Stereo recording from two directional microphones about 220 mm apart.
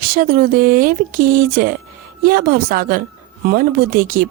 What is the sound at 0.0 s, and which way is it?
A woman's voice, 40° right (ahead or behind).